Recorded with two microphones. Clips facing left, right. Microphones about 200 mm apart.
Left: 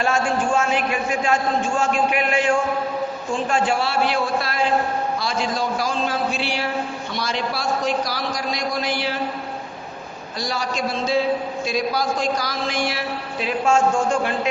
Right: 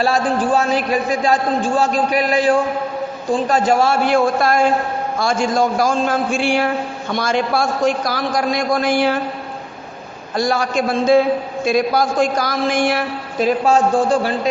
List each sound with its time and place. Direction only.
0.0 s a man's voice: 35° right (ahead or behind); by 9.1 s 50° right (ahead or behind)
10.3 s a man's voice: 50° right (ahead or behind); by 14.3 s 35° right (ahead or behind)